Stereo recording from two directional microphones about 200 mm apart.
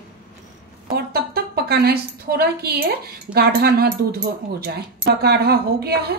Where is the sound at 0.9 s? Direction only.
50° right (ahead or behind).